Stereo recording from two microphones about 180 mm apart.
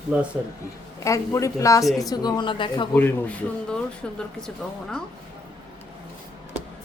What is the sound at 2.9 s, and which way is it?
Speech, 10° left (ahead or behind).